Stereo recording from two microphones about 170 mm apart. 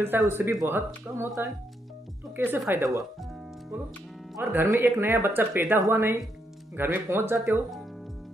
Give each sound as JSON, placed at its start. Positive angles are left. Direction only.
{"t": 0.0, "sound": "speech", "side_deg": -15}
{"t": 4.4, "sound": "speech", "side_deg": -10}